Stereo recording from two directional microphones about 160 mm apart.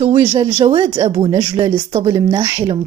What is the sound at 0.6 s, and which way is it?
A woman's voice, 30° right (ahead or behind).